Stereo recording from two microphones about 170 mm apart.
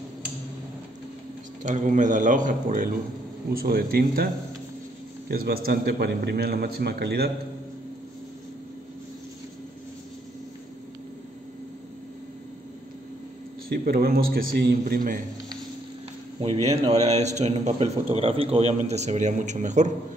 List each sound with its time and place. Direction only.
1.6 s a man's voice: 45° right (ahead or behind)
5.3 s a man's voice: 60° right (ahead or behind)
13.7 s a man's voice: 65° right (ahead or behind)
16.6 s a man's voice: 40° right (ahead or behind)